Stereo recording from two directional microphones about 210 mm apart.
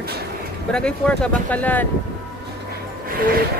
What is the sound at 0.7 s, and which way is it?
Speech, 5° left (ahead or behind).